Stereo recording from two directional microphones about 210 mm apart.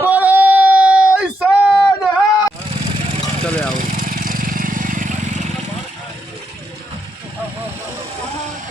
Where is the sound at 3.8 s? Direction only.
40° right (ahead or behind).